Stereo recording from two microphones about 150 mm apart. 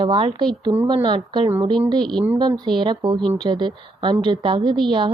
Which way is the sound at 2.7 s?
35° right (ahead or behind).